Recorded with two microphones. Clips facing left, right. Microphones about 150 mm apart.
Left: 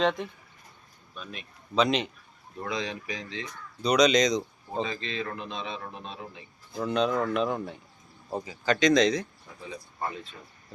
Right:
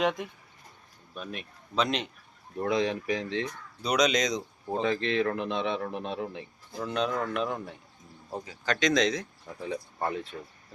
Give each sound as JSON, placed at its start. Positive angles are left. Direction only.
{"t": 1.1, "sound": "speech", "side_deg": -55}
{"t": 1.7, "sound": "speech", "side_deg": 0}
{"t": 2.6, "sound": "speech", "side_deg": -55}
{"t": 3.8, "sound": "speech", "side_deg": -5}
{"t": 4.8, "sound": "a man's voice", "side_deg": -70}
{"t": 6.7, "sound": "speech", "side_deg": 0}
{"t": 9.6, "sound": "speech", "side_deg": -65}